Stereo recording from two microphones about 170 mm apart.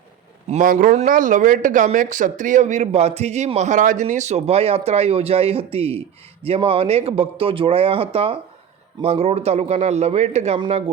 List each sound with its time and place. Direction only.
0.4 s speech: 50° right (ahead or behind)